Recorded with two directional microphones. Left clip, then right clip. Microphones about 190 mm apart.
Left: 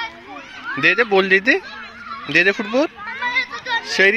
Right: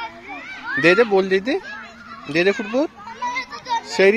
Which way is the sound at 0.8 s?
10° right (ahead or behind).